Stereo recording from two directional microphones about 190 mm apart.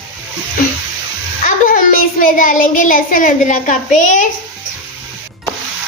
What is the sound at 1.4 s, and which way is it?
A child's voice, 45° left (ahead or behind).